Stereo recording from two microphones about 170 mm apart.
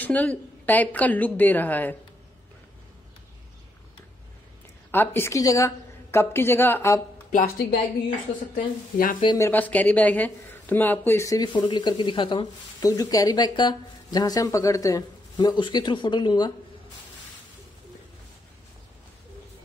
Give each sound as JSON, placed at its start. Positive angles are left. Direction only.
{"t": 0.0, "sound": "a woman's voice", "side_deg": 10}
{"t": 4.9, "sound": "a woman's voice", "side_deg": 10}
{"t": 7.3, "sound": "a woman's voice", "side_deg": 55}
{"t": 8.9, "sound": "speech", "side_deg": 55}
{"t": 9.2, "sound": "speech", "side_deg": 25}
{"t": 9.5, "sound": "speech", "side_deg": 10}